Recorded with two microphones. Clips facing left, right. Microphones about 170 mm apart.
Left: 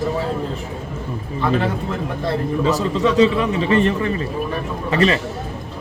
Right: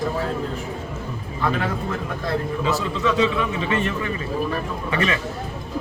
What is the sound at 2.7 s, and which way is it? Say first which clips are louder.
A man's voice: left 4 dB; 40° left (ahead or behind).